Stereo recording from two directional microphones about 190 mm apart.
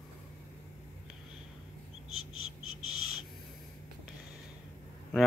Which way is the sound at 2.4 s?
90° left.